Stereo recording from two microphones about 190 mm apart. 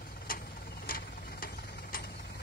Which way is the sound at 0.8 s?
50° left (ahead or behind).